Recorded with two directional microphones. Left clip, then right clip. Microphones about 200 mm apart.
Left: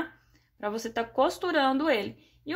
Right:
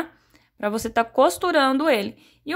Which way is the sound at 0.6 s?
40° right (ahead or behind).